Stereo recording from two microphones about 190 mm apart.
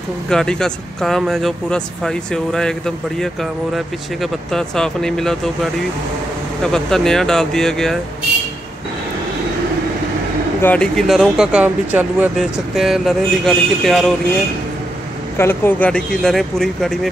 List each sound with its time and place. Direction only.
0.3 s speech: 5° left (ahead or behind)
3.7 s speech: centre (ahead or behind)
10.6 s speech: 5° left (ahead or behind)
15.3 s speech: 10° left (ahead or behind)